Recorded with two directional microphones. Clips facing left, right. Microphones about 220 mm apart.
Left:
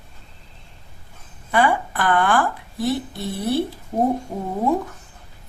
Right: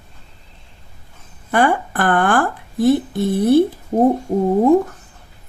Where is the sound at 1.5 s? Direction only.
50° right (ahead or behind).